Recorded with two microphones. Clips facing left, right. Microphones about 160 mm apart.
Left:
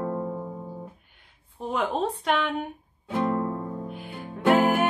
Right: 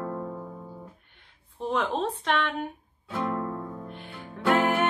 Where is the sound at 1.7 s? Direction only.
5° left (ahead or behind).